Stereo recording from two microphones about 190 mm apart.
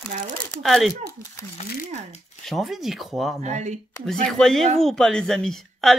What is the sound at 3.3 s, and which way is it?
Speech, 35° right (ahead or behind).